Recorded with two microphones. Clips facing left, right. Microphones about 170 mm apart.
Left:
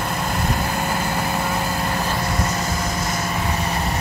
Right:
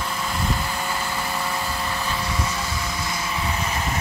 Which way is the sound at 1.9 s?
45° left (ahead or behind).